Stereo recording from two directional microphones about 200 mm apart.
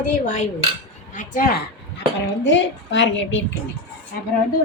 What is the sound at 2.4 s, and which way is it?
Speech, 65° left (ahead or behind).